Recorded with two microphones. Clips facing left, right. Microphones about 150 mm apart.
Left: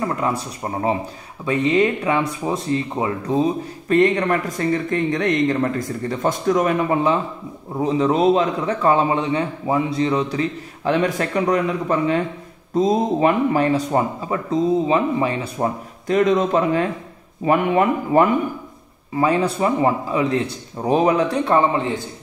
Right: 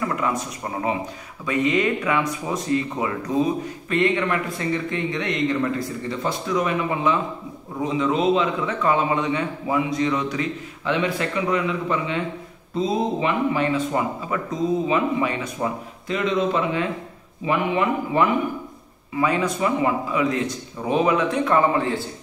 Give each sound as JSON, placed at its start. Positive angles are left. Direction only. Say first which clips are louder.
{"t": 0.0, "sound": "a man's voice", "louder": "left 2 dB", "side_deg": 35}
{"t": 3.9, "sound": "a man's voice", "louder": "left 5 dB", "side_deg": 40}
{"t": 19.1, "sound": "a man's voice", "louder": "left 3 dB", "side_deg": 35}